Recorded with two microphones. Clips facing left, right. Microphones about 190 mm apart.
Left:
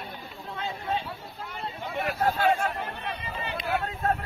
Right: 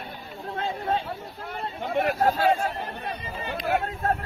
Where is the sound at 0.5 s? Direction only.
50° right (ahead or behind).